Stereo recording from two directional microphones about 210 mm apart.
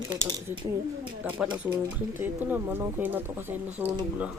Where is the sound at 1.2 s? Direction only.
5° right (ahead or behind).